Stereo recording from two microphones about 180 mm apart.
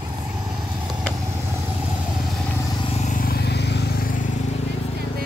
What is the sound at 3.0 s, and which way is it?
Vehicle, 50° left (ahead or behind).